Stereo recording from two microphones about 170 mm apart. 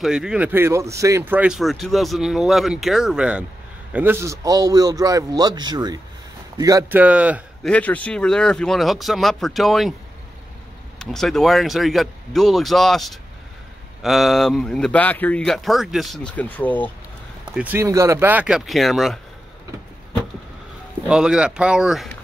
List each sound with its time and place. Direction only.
0.0 s a man's voice: 5° right (ahead or behind)
7.6 s speech: 5° left (ahead or behind)
11.0 s speech: centre (ahead or behind)
17.6 s speech: 10° right (ahead or behind)
21.1 s speech: 5° right (ahead or behind)